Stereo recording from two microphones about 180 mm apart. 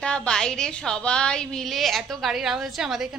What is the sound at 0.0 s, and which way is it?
A woman's voice, 5° left (ahead or behind).